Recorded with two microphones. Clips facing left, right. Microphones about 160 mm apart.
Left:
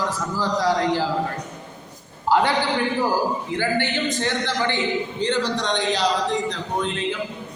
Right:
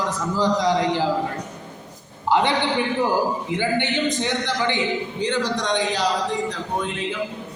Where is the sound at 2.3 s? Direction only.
20° right (ahead or behind).